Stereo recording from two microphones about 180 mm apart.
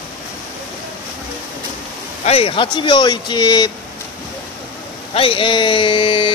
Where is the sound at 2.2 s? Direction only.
35° left (ahead or behind).